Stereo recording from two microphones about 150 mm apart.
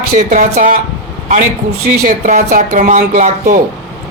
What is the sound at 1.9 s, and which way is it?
Speech, 60° right (ahead or behind).